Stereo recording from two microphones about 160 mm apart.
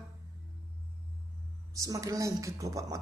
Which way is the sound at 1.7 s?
20° right (ahead or behind).